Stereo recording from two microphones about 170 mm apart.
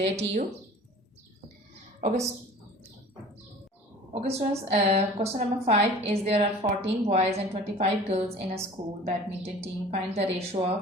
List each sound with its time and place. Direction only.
0.0 s a woman's voice: 40° right (ahead or behind)
2.0 s a woman's voice: 45° right (ahead or behind)
4.1 s a woman's voice: 40° right (ahead or behind)